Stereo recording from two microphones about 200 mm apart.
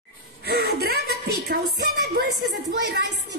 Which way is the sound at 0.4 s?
50° right (ahead or behind).